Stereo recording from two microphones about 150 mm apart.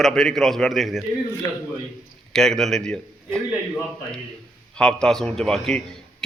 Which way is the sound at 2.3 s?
5° left (ahead or behind).